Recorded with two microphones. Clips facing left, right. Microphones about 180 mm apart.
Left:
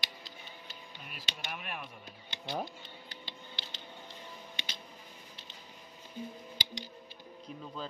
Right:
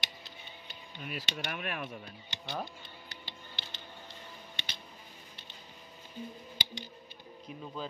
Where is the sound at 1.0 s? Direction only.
80° right.